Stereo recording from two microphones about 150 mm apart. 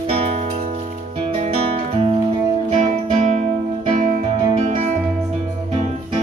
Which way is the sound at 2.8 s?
50° right (ahead or behind).